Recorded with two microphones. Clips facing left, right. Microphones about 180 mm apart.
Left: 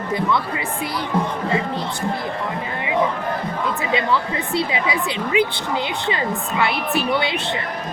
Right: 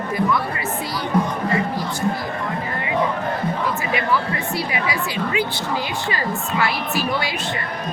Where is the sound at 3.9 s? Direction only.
25° left (ahead or behind).